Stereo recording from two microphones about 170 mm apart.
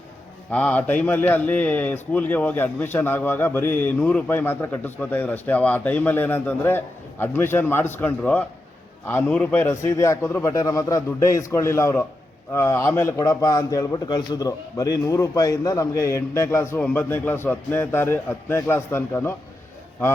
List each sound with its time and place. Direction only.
0.5 s a man's voice: 10° left (ahead or behind)